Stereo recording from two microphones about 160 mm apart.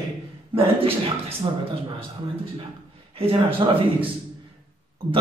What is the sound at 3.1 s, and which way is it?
Speech, 35° right (ahead or behind).